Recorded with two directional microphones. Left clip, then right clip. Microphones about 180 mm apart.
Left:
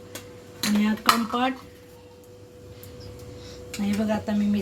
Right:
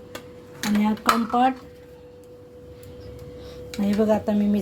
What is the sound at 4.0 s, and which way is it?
Speech, 40° right (ahead or behind).